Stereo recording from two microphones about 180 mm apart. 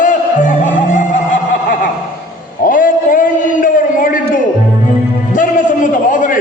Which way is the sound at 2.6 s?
50° left (ahead or behind).